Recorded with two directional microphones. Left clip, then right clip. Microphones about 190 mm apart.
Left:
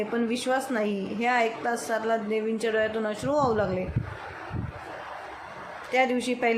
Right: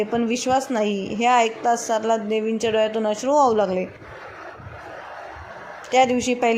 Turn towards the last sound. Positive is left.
turn(degrees=-25)  # may be behind; listen again after turning